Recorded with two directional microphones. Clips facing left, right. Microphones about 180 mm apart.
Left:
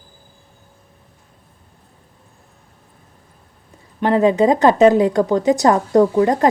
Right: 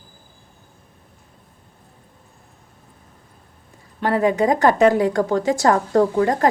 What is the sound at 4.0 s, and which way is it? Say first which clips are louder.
A woman's voice: left 4 dB; 20° left (ahead or behind).